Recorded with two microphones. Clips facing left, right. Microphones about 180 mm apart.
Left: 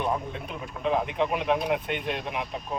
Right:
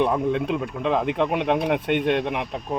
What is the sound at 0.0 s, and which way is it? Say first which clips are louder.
Speech: right 8 dB; 70° right (ahead or behind).